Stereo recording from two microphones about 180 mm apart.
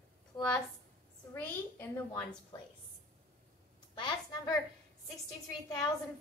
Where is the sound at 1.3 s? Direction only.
10° left (ahead or behind).